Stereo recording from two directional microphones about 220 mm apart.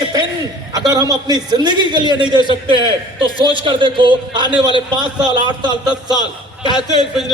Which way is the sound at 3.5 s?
20° right (ahead or behind).